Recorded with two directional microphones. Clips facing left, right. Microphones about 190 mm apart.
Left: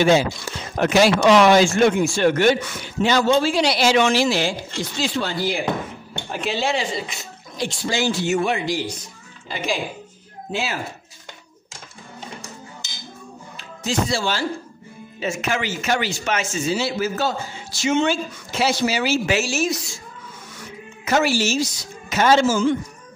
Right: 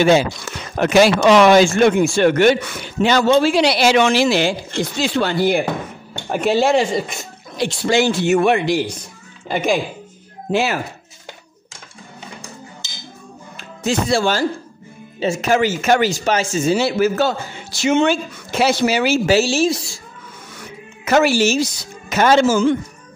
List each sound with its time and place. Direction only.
0.0 s speech: 70° right (ahead or behind)
6.2 s speech: 50° right (ahead or behind)
10.5 s speech: 65° right (ahead or behind)
13.6 s speech: 60° right (ahead or behind)
15.1 s speech: 30° right (ahead or behind)
16.7 s speech: 60° right (ahead or behind)
19.2 s speech: 30° right (ahead or behind)
20.5 s a sound: 60° right (ahead or behind)
22.1 s speech: 55° right (ahead or behind)